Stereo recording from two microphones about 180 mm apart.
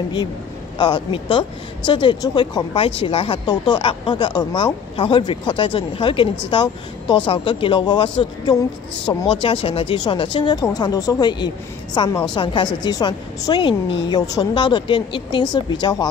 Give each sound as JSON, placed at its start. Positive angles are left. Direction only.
{"t": 0.7, "sound": "a woman's voice", "side_deg": 25}